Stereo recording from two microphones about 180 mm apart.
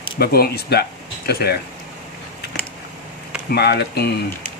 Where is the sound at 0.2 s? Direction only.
60° left (ahead or behind).